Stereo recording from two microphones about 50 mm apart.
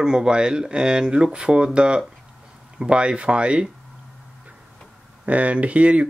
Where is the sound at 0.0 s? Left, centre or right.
Centre.